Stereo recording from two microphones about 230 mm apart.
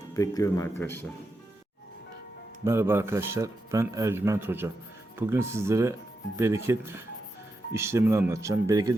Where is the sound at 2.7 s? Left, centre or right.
Centre.